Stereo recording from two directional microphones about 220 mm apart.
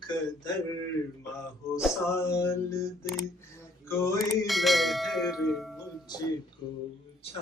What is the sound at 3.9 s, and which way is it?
Mantra, 15° left (ahead or behind).